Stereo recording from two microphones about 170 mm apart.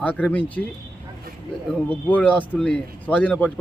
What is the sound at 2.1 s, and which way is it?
Speech, 10° left (ahead or behind).